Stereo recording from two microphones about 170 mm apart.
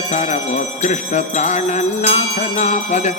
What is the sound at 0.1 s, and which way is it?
Music, 45° left (ahead or behind).